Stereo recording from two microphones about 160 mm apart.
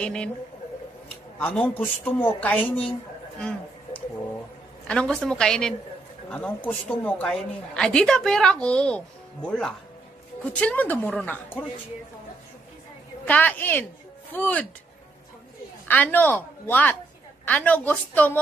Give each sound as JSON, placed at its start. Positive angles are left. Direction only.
{"t": 0.0, "sound": "a woman's voice", "side_deg": 5}
{"t": 1.4, "sound": "a woman's voice", "side_deg": 10}
{"t": 3.3, "sound": "a sound", "side_deg": 5}
{"t": 4.8, "sound": "a woman's voice", "side_deg": 5}
{"t": 13.3, "sound": "a woman's voice", "side_deg": 10}
{"t": 15.9, "sound": "a woman's voice", "side_deg": 10}